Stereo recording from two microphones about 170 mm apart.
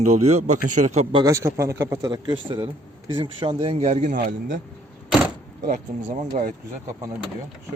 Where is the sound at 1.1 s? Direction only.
20° right (ahead or behind); by 4.5 s 50° right (ahead or behind).